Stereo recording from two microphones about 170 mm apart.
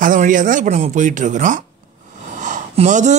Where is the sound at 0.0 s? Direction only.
50° right (ahead or behind).